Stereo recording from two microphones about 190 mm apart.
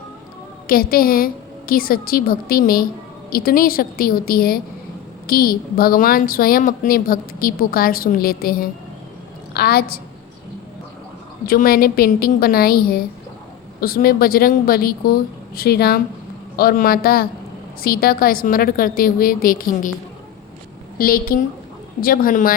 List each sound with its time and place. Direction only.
0.7 s a woman's voice: 50° left (ahead or behind)
11.4 s a woman's voice: 50° left (ahead or behind)
21.0 s a woman's voice: 50° left (ahead or behind)